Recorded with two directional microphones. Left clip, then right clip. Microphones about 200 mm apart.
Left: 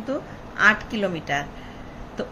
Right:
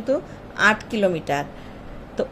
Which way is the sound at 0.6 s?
35° right (ahead or behind).